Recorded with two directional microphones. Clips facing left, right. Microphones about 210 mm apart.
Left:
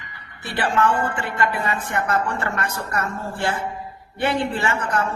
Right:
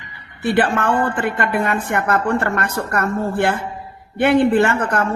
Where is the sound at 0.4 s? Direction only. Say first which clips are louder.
Right 4 dB; 55° right (ahead or behind).